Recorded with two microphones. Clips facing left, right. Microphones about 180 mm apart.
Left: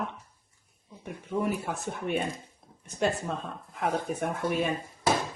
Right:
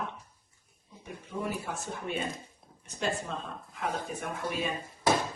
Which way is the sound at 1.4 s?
60° left (ahead or behind).